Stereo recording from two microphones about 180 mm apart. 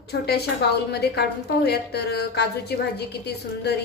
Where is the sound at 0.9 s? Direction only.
65° left (ahead or behind).